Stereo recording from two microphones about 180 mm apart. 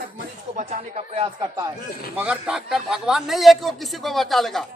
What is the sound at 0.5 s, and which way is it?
Speech, 35° right (ahead or behind).